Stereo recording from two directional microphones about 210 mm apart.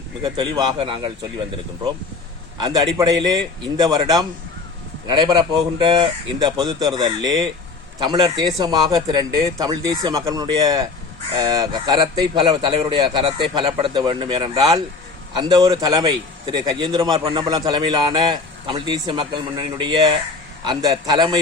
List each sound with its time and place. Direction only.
0.2 s speech: 20° right (ahead or behind)
2.6 s speech: 20° right (ahead or behind)